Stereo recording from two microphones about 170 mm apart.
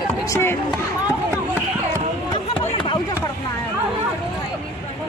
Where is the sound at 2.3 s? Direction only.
30° left (ahead or behind).